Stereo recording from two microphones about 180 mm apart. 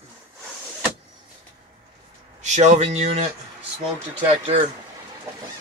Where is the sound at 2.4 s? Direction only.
40° right (ahead or behind).